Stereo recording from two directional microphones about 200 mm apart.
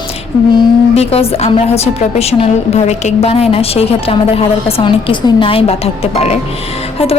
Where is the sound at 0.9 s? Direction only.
30° left (ahead or behind).